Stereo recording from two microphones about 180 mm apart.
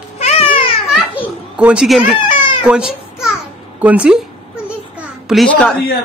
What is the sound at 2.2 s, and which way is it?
Cat, 25° left (ahead or behind).